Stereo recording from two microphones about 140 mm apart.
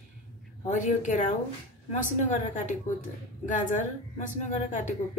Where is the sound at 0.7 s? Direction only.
60° left (ahead or behind).